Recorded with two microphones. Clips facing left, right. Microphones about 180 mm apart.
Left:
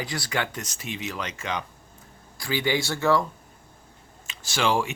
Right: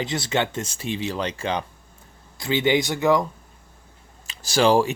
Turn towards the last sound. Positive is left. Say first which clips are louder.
# right 7 dB
turn(degrees=-35)  # may be behind; listen again after turning